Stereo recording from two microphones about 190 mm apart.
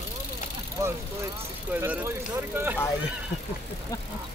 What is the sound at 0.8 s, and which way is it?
Speech, 15° right (ahead or behind).